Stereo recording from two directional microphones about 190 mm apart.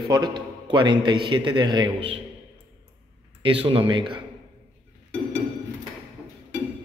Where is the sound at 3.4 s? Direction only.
25° right (ahead or behind).